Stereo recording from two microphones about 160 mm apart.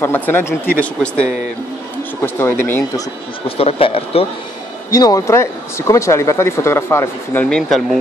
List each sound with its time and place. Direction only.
0.0 s speech: 15° left (ahead or behind)
3.4 s speech: 40° left (ahead or behind)
4.9 s speech: 20° left (ahead or behind)
7.4 s speech: centre (ahead or behind)